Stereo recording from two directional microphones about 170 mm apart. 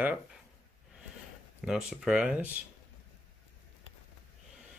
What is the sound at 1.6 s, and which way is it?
Speech, 5° right (ahead or behind).